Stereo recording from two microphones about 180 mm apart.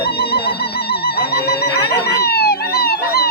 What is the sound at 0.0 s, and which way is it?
Music, 60° left (ahead or behind).